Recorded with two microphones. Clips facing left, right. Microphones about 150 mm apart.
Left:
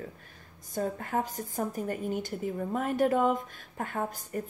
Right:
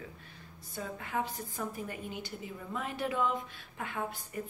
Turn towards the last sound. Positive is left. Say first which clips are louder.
# left 4 dB
turn(degrees=45)  # may be behind; listen again after turning